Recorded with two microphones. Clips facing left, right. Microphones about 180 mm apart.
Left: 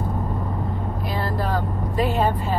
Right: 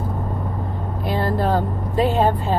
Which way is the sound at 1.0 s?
25° right (ahead or behind).